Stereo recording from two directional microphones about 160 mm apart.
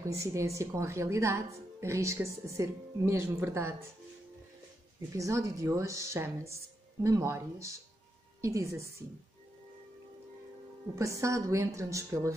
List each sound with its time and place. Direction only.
0.1 s a woman's voice: 20° right (ahead or behind)
5.1 s a woman's voice: 20° right (ahead or behind)
11.0 s speech: 20° right (ahead or behind)